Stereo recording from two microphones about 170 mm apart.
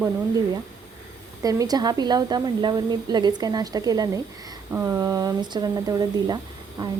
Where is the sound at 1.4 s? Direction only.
20° right (ahead or behind).